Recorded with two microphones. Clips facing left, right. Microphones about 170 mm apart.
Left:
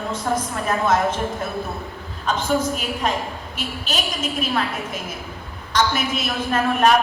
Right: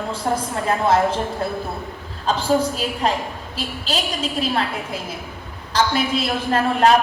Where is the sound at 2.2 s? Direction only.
30° right (ahead or behind).